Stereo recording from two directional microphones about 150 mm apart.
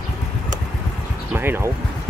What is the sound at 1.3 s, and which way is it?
Speech, 15° right (ahead or behind).